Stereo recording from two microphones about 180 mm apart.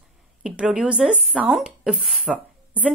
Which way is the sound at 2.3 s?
5° right (ahead or behind).